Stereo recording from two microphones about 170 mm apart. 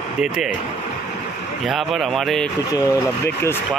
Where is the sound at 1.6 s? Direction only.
Centre (ahead or behind).